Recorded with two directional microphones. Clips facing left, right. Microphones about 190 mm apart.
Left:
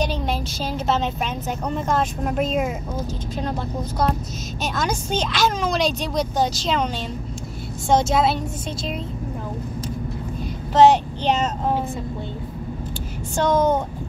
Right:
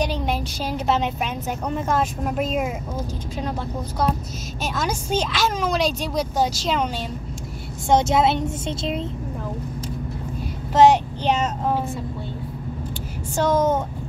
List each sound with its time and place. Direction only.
0.0 s a woman's voice: 15° right (ahead or behind)
4.7 s a woman's voice: 5° right (ahead or behind)
7.9 s a woman's voice: 20° right (ahead or behind)
10.7 s a woman's voice: 10° right (ahead or behind)
13.4 s a woman's voice: 5° right (ahead or behind)